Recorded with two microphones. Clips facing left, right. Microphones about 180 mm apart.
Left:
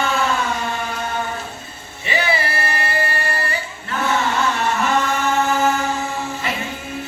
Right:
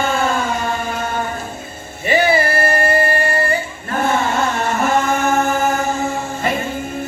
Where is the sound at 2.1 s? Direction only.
50° right (ahead or behind).